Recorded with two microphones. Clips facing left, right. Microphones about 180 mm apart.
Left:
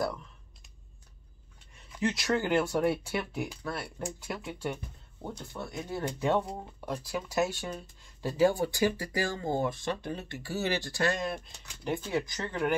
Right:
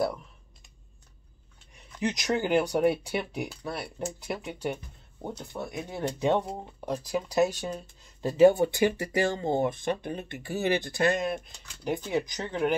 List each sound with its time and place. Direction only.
2.0 s speech: 20° right (ahead or behind)